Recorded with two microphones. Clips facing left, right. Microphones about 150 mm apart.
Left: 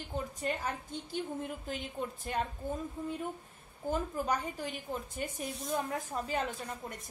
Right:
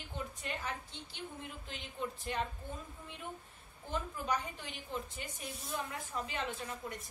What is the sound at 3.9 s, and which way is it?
A woman's voice, 45° left (ahead or behind).